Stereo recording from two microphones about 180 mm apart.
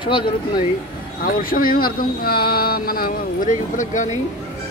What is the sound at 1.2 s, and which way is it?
Speech, 55° left (ahead or behind).